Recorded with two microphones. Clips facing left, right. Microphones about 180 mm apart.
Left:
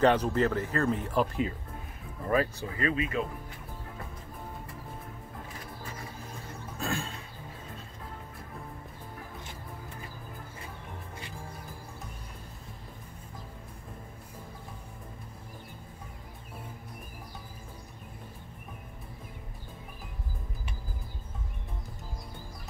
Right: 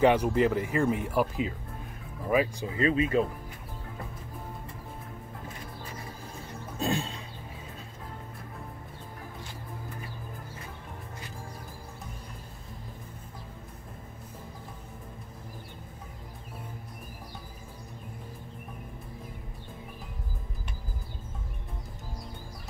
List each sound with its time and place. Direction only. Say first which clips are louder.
0.0 s speech: right 2 dB; 10° right (ahead or behind)
2.8 s speech: right 5 dB; 30° right (ahead or behind)
6.8 s music: right 4 dB; 20° right (ahead or behind)